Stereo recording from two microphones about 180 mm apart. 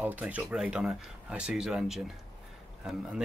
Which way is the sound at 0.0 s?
10° right (ahead or behind).